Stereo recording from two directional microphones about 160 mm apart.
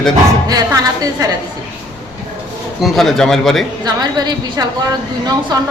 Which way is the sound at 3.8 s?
25° right (ahead or behind).